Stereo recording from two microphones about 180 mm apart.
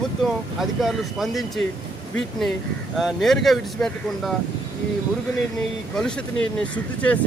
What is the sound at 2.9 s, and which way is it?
Speech, centre (ahead or behind).